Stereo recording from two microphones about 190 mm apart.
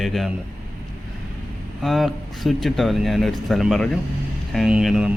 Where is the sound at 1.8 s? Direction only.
Centre (ahead or behind).